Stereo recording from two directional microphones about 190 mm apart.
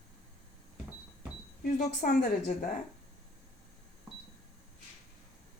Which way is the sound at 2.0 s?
40° left (ahead or behind).